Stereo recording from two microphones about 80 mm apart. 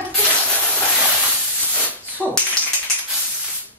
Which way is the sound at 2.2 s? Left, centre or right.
Centre.